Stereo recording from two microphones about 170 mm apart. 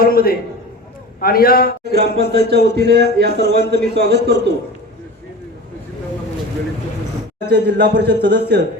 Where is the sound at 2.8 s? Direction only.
75° right (ahead or behind).